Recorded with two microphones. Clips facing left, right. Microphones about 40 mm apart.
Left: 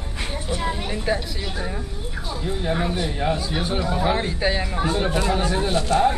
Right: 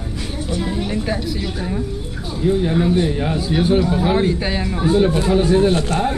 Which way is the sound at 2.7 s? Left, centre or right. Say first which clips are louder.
Right 7 dB; centre.